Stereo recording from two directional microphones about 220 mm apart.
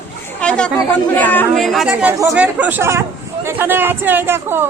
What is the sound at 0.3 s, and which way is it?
Chatter, 5° left (ahead or behind).